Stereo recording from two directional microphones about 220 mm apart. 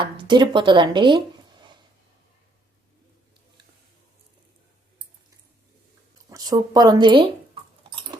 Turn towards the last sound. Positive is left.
turn(degrees=-20)  # may be behind; listen again after turning